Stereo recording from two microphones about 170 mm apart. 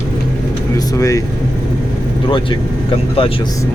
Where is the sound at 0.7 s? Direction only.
20° left (ahead or behind).